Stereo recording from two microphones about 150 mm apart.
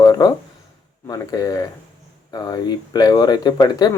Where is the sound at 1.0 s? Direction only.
25° left (ahead or behind).